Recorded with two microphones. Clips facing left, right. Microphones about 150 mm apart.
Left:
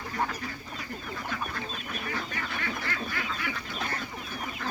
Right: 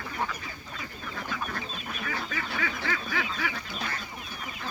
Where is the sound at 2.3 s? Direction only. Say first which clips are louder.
Right 1 dB; 90° right.